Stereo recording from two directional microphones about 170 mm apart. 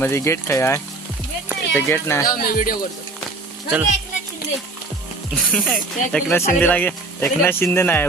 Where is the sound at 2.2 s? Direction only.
55° left (ahead or behind).